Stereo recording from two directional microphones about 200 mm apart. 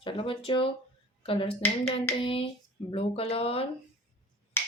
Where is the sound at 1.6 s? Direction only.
10° left (ahead or behind).